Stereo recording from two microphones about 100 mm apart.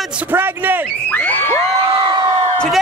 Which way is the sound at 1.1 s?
15° left (ahead or behind).